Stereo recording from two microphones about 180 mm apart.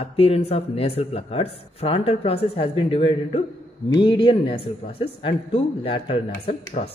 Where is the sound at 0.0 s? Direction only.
30° left (ahead or behind).